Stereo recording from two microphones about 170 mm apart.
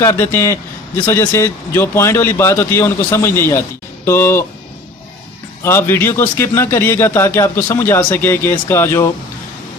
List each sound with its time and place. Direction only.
0.0 s a man's voice: 15° left (ahead or behind)
5.6 s a man's voice: 15° left (ahead or behind)